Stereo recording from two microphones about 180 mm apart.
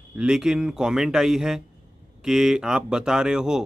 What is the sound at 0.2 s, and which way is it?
Speech, 5° right (ahead or behind).